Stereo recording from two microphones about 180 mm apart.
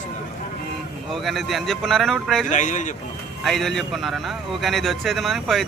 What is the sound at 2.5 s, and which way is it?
Speech, 45° left (ahead or behind).